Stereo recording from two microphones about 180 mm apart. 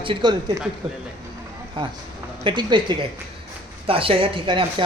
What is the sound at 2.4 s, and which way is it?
Speech, 25° right (ahead or behind).